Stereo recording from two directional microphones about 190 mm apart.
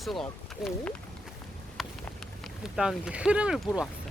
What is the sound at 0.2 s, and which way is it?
Speech, centre (ahead or behind).